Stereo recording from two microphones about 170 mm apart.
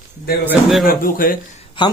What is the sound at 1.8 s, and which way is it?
Speech, 30° left (ahead or behind).